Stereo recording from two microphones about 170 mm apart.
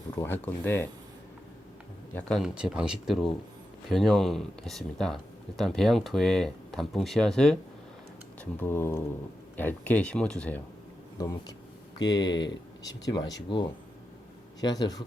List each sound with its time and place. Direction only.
0.2 s speech: 10° left (ahead or behind)
2.1 s speech: centre (ahead or behind)
8.6 s speech: 15° left (ahead or behind)
11.2 s speech: 20° left (ahead or behind)
14.6 s speech: 25° left (ahead or behind)